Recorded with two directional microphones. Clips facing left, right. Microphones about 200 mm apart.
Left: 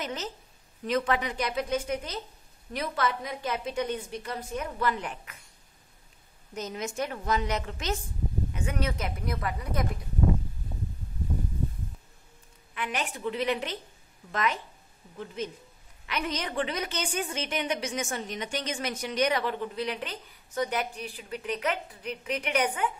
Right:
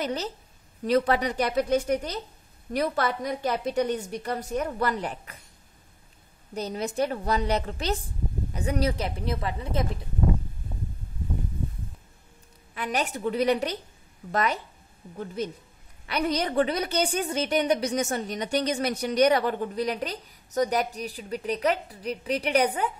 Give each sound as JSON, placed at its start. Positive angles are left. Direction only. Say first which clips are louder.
{"t": 0.0, "sound": "a woman's voice", "louder": "right 5 dB", "side_deg": -35}
{"t": 6.5, "sound": "a woman's voice", "louder": "right 4 dB", "side_deg": -35}
{"t": 12.7, "sound": "a woman's voice", "louder": "right 4 dB", "side_deg": -40}